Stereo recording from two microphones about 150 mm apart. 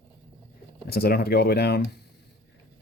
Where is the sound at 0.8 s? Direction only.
90° left.